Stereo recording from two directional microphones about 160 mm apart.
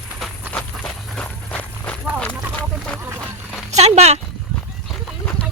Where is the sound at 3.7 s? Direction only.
40° right (ahead or behind).